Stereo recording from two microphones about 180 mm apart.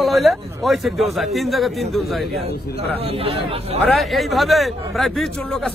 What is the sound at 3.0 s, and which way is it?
Speech, 30° right (ahead or behind).